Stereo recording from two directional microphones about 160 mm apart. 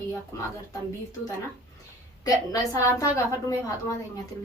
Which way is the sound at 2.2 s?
20° left (ahead or behind).